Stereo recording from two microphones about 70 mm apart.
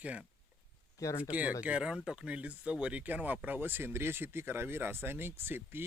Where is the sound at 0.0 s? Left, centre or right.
Centre.